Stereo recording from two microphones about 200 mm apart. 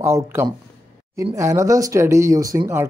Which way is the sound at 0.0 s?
15° right (ahead or behind).